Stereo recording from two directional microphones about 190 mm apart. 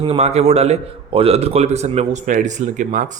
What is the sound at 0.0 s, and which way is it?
A man's voice, 30° right (ahead or behind).